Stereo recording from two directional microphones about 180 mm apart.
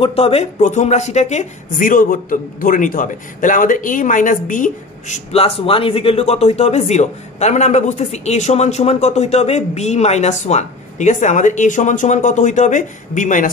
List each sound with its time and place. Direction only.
0.0 s speech: 35° left (ahead or behind)